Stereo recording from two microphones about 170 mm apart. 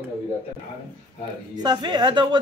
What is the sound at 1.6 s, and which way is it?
Speech, 25° right (ahead or behind).